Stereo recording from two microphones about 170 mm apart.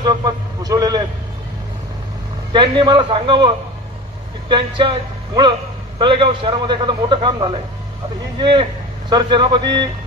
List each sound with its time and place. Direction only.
0.0 s vehicle: 20° right (ahead or behind)
2.5 s a man's voice: 25° right (ahead or behind)